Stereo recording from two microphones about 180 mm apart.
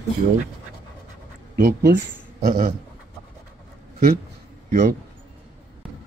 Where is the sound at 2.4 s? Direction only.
50° right (ahead or behind).